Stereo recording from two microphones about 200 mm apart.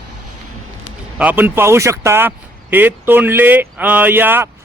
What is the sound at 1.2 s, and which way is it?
Speech, 10° right (ahead or behind).